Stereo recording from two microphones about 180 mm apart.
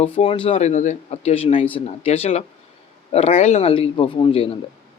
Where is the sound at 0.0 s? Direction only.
30° left (ahead or behind).